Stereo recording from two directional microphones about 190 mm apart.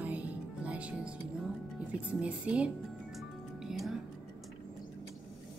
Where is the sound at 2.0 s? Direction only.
5° right (ahead or behind).